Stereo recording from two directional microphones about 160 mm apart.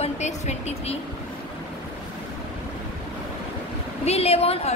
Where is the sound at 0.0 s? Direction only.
45° left (ahead or behind).